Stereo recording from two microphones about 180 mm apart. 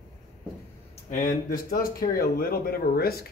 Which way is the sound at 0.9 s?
45° left (ahead or behind).